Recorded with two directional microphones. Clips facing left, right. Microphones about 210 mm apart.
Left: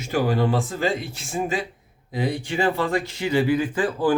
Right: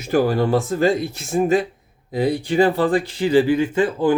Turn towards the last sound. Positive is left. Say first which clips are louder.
# right 4 dB
turn(degrees=-25)  # may be behind; listen again after turning